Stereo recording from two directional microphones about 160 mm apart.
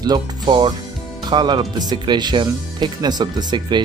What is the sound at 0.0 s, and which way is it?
Speech, 25° right (ahead or behind).